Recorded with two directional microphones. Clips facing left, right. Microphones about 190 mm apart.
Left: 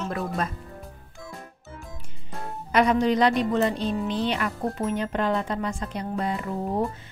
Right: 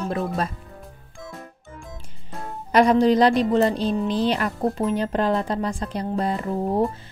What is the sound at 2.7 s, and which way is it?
Speech, 35° right (ahead or behind).